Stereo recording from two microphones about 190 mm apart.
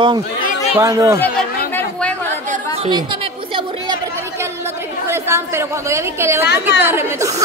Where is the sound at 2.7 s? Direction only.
30° right (ahead or behind).